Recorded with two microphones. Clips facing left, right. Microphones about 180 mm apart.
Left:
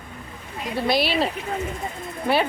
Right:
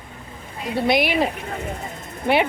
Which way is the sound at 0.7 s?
20° right (ahead or behind).